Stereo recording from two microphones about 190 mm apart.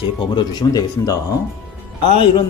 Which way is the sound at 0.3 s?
20° left (ahead or behind).